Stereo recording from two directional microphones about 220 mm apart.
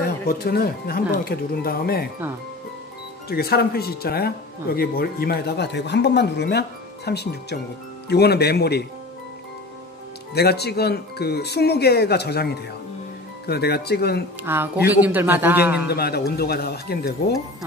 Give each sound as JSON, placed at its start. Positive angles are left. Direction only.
{"t": 0.3, "sound": "speech", "side_deg": 45}
{"t": 3.3, "sound": "speech", "side_deg": 45}
{"t": 10.3, "sound": "speech", "side_deg": 45}
{"t": 13.5, "sound": "speech", "side_deg": 45}
{"t": 14.4, "sound": "a man's voice", "side_deg": -10}
{"t": 15.9, "sound": "speech", "side_deg": 45}